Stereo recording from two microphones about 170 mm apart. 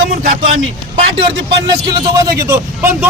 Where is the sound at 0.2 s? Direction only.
55° right (ahead or behind).